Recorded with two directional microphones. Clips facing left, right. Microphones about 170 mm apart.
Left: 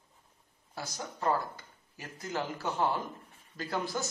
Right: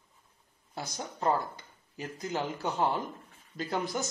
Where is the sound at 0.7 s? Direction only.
20° right (ahead or behind).